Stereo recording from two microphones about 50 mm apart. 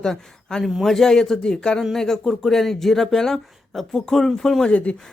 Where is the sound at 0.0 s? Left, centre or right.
Centre.